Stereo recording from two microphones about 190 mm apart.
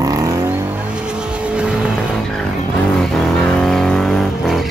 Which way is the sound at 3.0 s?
Centre (ahead or behind).